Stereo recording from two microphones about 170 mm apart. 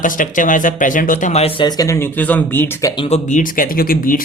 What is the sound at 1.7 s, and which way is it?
Speech, 20° left (ahead or behind).